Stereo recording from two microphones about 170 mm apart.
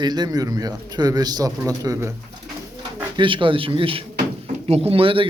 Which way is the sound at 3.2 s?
30° right (ahead or behind).